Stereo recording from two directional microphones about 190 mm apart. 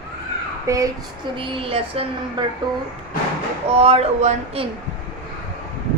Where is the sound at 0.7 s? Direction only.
15° right (ahead or behind).